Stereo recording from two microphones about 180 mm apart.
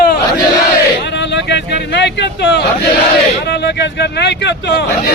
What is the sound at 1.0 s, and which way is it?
Speech, 75° left (ahead or behind).